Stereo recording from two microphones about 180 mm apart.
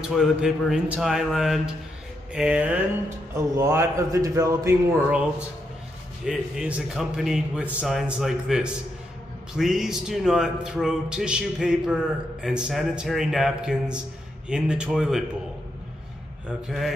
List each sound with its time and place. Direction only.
0.1 s speech: centre (ahead or behind)
6.2 s speech: 5° right (ahead or behind)
16.4 s speech: centre (ahead or behind)